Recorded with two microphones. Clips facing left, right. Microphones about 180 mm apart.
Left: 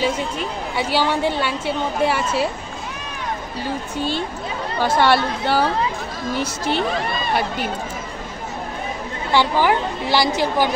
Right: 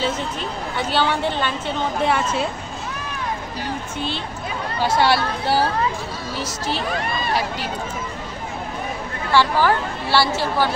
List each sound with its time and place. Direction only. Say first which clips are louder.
0.0 s a woman's voice: left 2 dB; 10° left (ahead or behind)
4.8 s speech: left 2 dB; 55° left (ahead or behind)
9.3 s a woman's voice: even; 15° left (ahead or behind)